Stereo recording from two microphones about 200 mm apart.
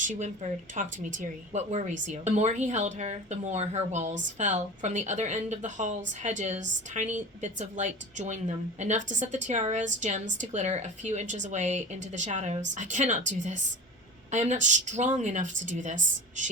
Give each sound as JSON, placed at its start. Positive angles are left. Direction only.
{"t": 0.0, "sound": "speech", "side_deg": -35}